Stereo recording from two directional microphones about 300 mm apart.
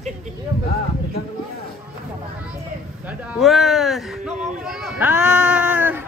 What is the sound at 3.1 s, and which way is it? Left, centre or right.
Speech, centre.